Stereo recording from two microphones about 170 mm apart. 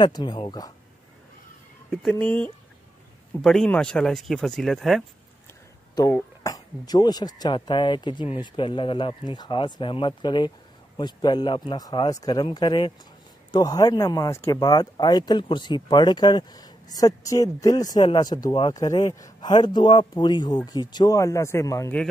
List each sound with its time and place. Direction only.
0.0 s speech: 25° left (ahead or behind)
1.9 s speech: 5° left (ahead or behind)
6.0 s speech: 20° left (ahead or behind)